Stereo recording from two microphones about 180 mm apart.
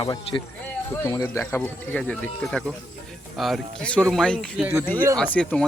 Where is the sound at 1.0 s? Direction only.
15° left (ahead or behind).